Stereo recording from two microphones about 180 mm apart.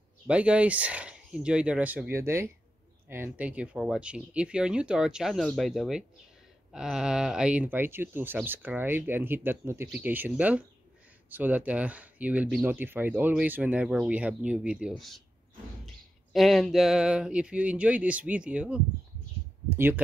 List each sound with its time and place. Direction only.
0.3 s speech: 5° right (ahead or behind)
16.3 s speech: centre (ahead or behind)